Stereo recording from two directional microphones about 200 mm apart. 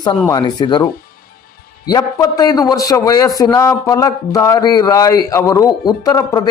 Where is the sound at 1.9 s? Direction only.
20° left (ahead or behind).